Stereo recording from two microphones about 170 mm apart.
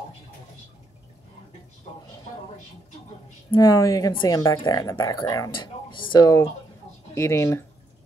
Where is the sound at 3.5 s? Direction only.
20° left (ahead or behind).